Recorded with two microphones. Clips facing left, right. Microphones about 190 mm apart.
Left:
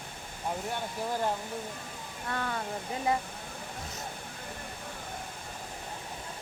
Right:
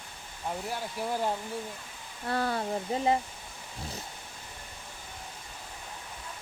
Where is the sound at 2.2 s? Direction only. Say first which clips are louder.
Right 5 dB; 35° right (ahead or behind).